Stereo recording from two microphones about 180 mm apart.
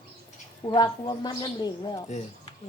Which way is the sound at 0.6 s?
25° left (ahead or behind).